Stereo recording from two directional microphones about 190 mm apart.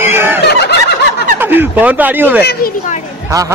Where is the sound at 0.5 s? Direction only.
60° left (ahead or behind).